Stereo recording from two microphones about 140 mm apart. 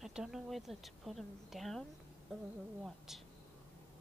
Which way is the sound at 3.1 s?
Centre (ahead or behind).